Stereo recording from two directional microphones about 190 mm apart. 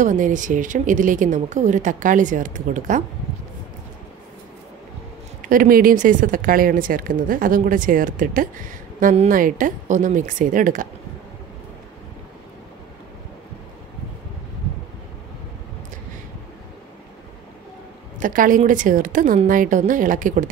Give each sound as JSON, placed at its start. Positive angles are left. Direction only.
{"t": 0.0, "sound": "speech", "side_deg": -40}
{"t": 5.4, "sound": "speech", "side_deg": -45}
{"t": 18.2, "sound": "speech", "side_deg": -45}